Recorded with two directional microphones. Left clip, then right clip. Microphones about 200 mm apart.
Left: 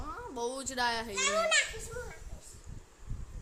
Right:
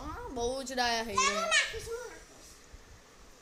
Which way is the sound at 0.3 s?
20° left (ahead or behind).